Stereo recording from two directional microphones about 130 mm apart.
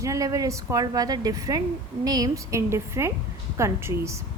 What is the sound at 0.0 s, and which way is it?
A woman's voice, 25° right (ahead or behind).